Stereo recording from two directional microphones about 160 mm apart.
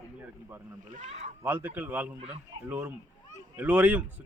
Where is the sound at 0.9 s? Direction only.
45° right (ahead or behind).